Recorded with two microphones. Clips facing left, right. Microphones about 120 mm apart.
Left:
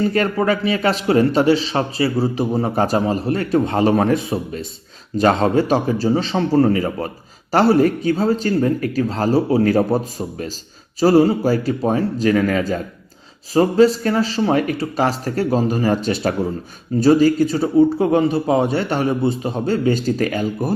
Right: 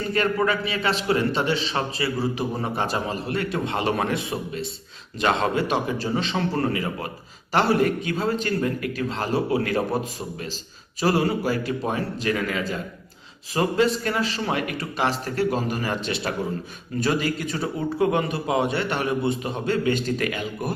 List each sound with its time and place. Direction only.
0.1 s a man's voice: 40° left (ahead or behind)